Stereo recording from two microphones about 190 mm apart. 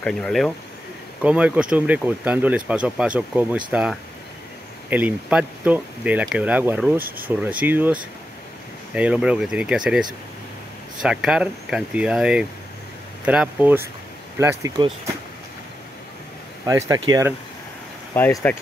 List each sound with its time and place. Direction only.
0.0 s speech: 5° left (ahead or behind)
7.0 s speech: 50° right (ahead or behind)
7.2 s speech: 10° right (ahead or behind)
16.6 s speech: 15° right (ahead or behind)
18.1 s speech: 10° left (ahead or behind)